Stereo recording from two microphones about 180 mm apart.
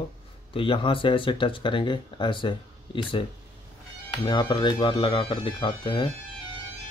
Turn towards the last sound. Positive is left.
turn(degrees=30)  # may be behind; listen again after turning